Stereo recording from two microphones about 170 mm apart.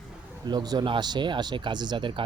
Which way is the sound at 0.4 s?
25° right (ahead or behind).